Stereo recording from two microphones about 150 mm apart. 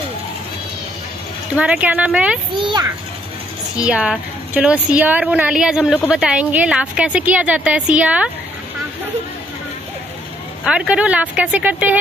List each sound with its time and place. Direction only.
1.5 s a woman's voice: 10° right (ahead or behind)
2.5 s a child's voice: 30° right (ahead or behind)
3.7 s a woman's voice: 10° right (ahead or behind)
10.6 s a woman's voice: 5° right (ahead or behind)